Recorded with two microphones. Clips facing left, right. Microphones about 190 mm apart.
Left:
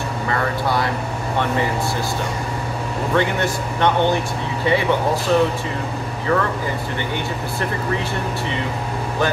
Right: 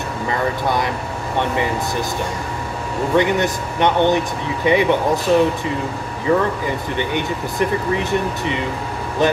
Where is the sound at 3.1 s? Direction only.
15° right (ahead or behind).